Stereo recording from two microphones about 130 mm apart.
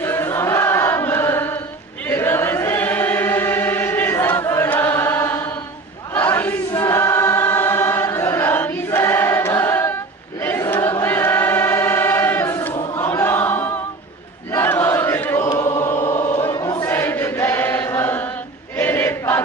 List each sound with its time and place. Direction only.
0.0 s chant: 15° left (ahead or behind)
2.0 s choir: 15° left (ahead or behind)
14.5 s chant: 15° left (ahead or behind)
16.5 s choir: 30° left (ahead or behind)
16.8 s choir: 15° left (ahead or behind)